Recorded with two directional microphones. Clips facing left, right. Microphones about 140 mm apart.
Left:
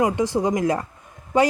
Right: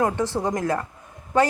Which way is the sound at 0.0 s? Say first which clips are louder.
Left 2 dB; 15° left (ahead or behind).